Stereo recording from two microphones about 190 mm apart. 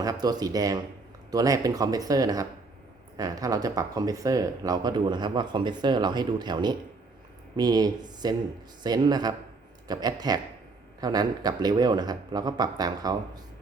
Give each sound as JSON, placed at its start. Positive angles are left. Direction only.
{"t": 0.0, "sound": "speech", "side_deg": -20}